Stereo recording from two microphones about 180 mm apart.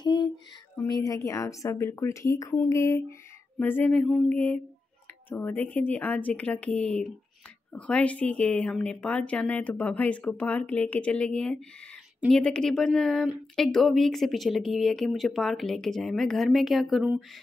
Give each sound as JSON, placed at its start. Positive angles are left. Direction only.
{"t": 0.0, "sound": "music", "side_deg": 25}
{"t": 0.7, "sound": "speech", "side_deg": 20}